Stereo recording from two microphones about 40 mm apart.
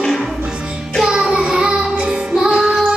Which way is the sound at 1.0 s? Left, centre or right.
Centre.